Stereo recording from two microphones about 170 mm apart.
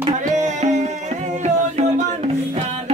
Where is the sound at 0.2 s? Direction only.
45° right (ahead or behind).